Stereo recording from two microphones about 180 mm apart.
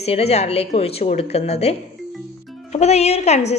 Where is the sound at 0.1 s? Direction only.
35° left (ahead or behind).